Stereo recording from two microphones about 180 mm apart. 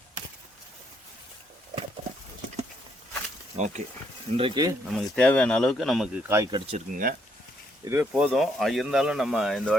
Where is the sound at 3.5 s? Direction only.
40° right (ahead or behind).